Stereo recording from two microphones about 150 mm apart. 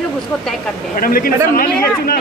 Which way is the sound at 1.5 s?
90° left.